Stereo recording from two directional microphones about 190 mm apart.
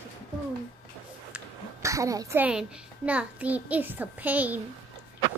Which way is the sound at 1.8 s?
15° right (ahead or behind).